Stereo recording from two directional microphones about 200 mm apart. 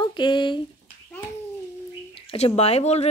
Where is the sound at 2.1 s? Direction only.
30° left (ahead or behind).